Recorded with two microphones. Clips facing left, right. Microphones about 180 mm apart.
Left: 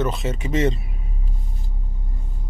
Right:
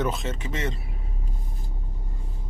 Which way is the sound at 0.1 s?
10° left (ahead or behind).